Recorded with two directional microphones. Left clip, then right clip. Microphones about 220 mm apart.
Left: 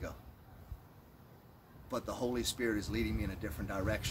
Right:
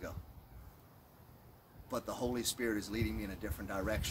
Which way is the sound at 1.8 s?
5° right (ahead or behind).